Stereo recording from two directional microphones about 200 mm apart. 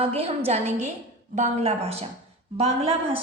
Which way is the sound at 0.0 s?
30° right (ahead or behind).